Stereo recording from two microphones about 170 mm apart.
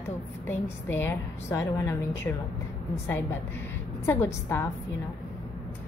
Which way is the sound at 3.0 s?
10° left (ahead or behind).